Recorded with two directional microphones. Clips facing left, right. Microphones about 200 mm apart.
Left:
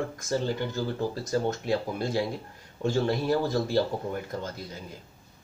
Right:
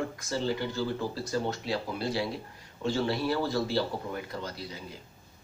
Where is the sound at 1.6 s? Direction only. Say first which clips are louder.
Left 4 dB; 50° left (ahead or behind).